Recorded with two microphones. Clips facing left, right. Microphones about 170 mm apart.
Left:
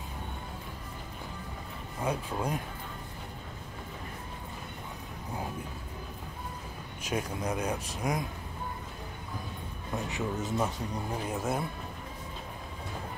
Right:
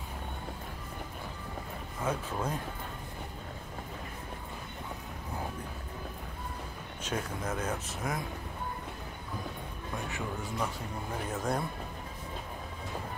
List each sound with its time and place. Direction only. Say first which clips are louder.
2.0 s speech: left 1 dB; 15° left (ahead or behind)
7.0 s speech: left 2 dB; 15° left (ahead or behind)
10.0 s speech: left 6 dB; 20° left (ahead or behind)
11.2 s speech: even; 10° left (ahead or behind)